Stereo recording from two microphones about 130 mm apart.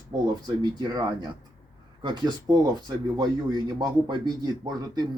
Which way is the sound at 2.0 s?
35° right (ahead or behind).